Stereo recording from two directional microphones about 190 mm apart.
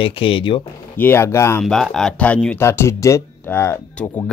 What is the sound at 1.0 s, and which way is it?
Speech, 10° left (ahead or behind).